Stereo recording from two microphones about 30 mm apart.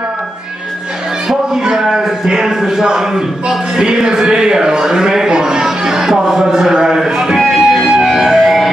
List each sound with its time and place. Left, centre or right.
1.5 s a sound: right
2.2 s a man's voice: right
7.0 s music: centre